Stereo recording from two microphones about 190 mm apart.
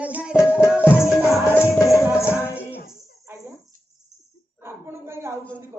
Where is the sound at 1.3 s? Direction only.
15° left (ahead or behind).